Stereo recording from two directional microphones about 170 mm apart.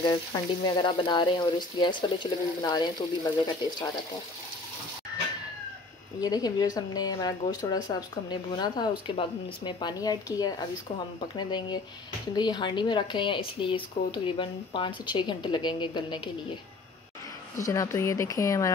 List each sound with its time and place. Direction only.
0.0 s speech: 25° left (ahead or behind)
6.2 s speech: 20° left (ahead or behind)
17.6 s speech: 20° left (ahead or behind)